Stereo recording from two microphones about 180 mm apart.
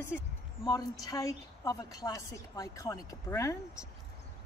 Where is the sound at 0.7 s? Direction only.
20° left (ahead or behind).